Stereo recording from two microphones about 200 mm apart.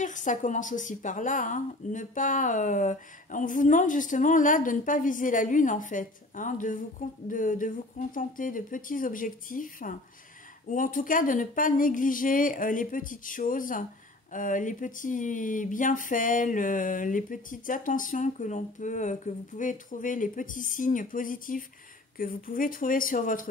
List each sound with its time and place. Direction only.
0.0 s a woman's voice: 40° left (ahead or behind)